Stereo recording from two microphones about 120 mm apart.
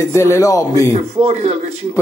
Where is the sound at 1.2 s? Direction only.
65° right (ahead or behind).